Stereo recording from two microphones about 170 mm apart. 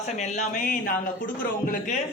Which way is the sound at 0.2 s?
50° left (ahead or behind).